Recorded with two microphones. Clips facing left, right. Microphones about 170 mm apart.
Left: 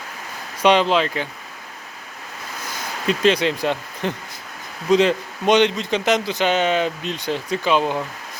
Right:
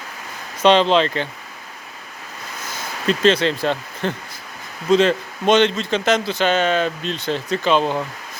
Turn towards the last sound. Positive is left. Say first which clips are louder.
# right 1 dB
turn(degrees=10)  # may be behind; listen again after turning